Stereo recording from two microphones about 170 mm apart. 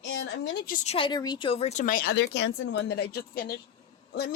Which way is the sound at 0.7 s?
40° left (ahead or behind).